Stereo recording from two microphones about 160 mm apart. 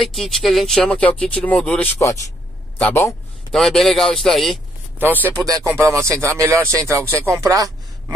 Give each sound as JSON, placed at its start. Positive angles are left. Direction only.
{"t": 0.0, "sound": "speech", "side_deg": 0}
{"t": 3.5, "sound": "speech", "side_deg": 0}
{"t": 5.7, "sound": "speech", "side_deg": -15}